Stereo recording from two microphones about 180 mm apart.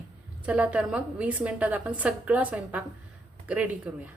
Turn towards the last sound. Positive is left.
turn(degrees=-10)  # may be behind; listen again after turning